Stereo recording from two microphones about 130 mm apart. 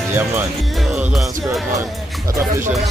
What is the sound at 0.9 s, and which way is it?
Music, 5° right (ahead or behind).